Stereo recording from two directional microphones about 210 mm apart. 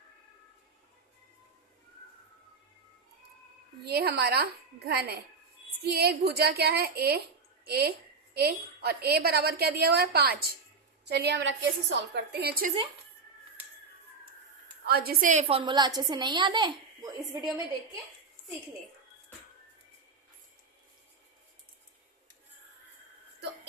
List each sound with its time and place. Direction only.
3.8 s a woman's voice: 50° right (ahead or behind)
14.8 s a woman's voice: 50° right (ahead or behind); by 17.2 s 20° right (ahead or behind)